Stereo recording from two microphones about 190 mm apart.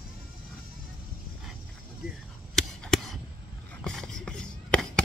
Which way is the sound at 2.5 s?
Centre (ahead or behind).